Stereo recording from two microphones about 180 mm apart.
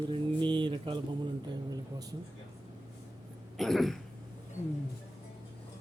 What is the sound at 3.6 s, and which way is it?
Speech, centre (ahead or behind).